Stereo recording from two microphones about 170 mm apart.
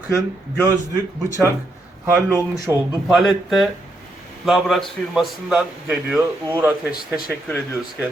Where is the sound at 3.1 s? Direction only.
Centre (ahead or behind).